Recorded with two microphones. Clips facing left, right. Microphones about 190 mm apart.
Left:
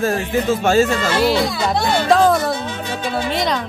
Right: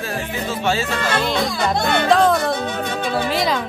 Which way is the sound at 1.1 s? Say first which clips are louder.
Left 4 dB; 5° left (ahead or behind).